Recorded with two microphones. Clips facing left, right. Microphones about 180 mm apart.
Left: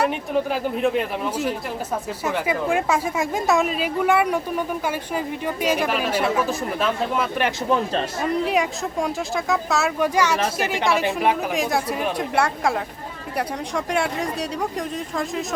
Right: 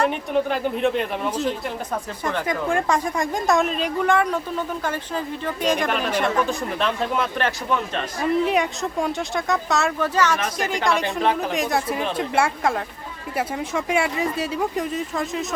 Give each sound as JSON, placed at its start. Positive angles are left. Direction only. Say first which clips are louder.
{"t": 0.0, "sound": "a woman's voice", "louder": "right 1 dB", "side_deg": 5}
{"t": 7.7, "sound": "a man's voice", "louder": "left 3 dB", "side_deg": 35}
{"t": 8.3, "sound": "a woman's voice", "louder": "right 2 dB", "side_deg": 0}